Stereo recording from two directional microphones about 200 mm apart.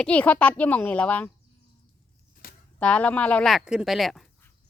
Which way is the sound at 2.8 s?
5° left (ahead or behind).